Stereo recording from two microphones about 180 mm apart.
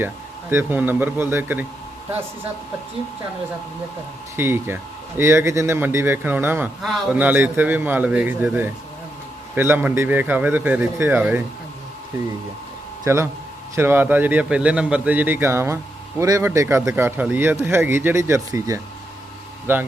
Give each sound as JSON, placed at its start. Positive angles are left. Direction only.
{"t": 0.5, "sound": "a man's voice", "side_deg": -10}
{"t": 4.4, "sound": "a man's voice", "side_deg": -10}
{"t": 6.8, "sound": "a man's voice", "side_deg": 0}
{"t": 13.1, "sound": "a man's voice", "side_deg": -15}